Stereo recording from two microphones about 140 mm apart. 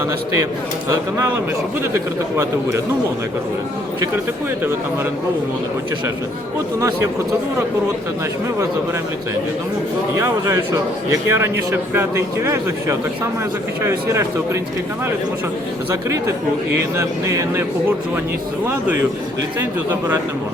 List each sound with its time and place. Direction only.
6.7 s speech: 20° right (ahead or behind)
10.2 s a man's voice: 20° right (ahead or behind)
17.0 s a man's voice: 20° right (ahead or behind)